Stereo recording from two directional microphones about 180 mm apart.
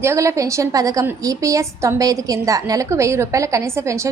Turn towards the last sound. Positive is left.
turn(degrees=-15)  # may be behind; listen again after turning